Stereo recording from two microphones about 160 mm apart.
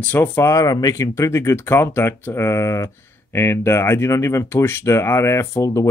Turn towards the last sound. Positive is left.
turn(degrees=20)  # may be behind; listen again after turning